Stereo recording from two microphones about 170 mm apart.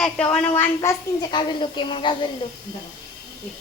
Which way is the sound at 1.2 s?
25° left (ahead or behind).